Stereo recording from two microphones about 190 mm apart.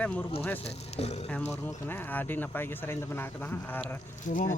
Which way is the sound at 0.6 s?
35° left (ahead or behind).